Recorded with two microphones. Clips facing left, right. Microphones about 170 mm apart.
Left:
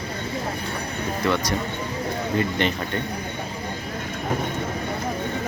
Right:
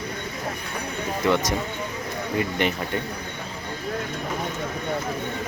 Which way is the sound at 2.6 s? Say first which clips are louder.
Even; 10° right (ahead or behind).